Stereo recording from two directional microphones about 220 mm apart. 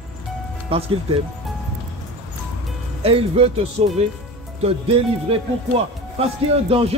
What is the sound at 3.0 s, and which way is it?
Speech, 25° right (ahead or behind).